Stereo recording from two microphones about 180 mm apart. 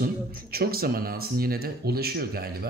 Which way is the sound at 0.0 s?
55° right (ahead or behind).